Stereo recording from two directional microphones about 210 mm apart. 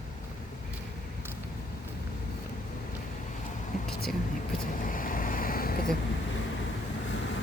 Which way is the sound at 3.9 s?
45° left (ahead or behind).